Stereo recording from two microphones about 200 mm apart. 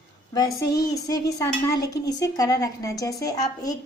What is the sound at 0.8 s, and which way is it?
A woman's voice, 15° left (ahead or behind).